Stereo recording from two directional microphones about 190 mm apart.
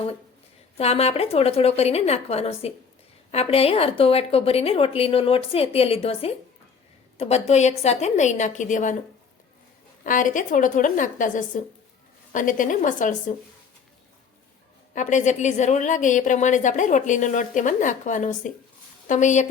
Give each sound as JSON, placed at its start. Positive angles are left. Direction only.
{"t": 0.8, "sound": "a woman's voice", "side_deg": 35}
{"t": 10.0, "sound": "a woman's voice", "side_deg": 45}
{"t": 14.9, "sound": "a woman's voice", "side_deg": 40}